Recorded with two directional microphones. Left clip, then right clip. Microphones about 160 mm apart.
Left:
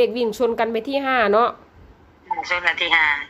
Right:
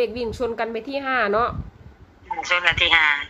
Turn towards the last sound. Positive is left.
turn(degrees=0)  # may be behind; listen again after turning